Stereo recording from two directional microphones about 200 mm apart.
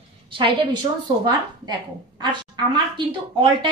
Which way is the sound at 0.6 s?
20° right (ahead or behind).